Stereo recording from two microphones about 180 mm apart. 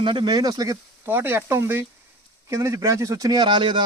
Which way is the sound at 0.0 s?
25° right (ahead or behind).